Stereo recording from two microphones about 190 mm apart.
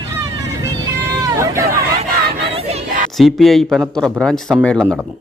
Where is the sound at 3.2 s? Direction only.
Centre (ahead or behind).